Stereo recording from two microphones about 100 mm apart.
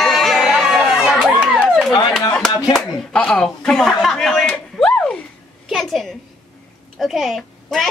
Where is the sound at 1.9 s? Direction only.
45° left (ahead or behind).